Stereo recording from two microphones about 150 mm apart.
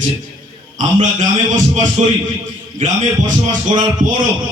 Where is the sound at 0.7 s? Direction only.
55° right (ahead or behind).